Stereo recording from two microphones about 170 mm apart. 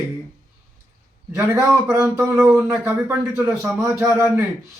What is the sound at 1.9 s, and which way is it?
A man's voice, 10° right (ahead or behind).